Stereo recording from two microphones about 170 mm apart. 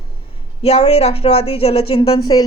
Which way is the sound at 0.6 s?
35° left (ahead or behind).